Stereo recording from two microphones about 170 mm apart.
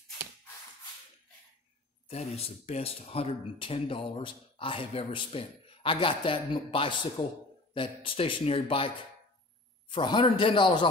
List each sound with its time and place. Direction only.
2.0 s a man's voice: 35° left (ahead or behind)